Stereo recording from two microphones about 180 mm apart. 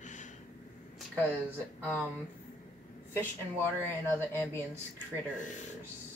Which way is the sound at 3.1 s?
15° left (ahead or behind).